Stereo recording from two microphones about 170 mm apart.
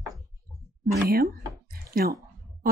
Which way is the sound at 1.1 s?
60° right (ahead or behind).